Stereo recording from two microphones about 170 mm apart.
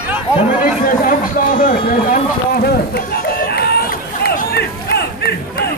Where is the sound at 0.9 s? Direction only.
55° left (ahead or behind); by 5.6 s 70° left (ahead or behind).